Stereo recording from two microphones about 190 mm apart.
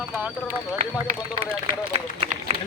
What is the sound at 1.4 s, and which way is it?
Run, 30° right (ahead or behind).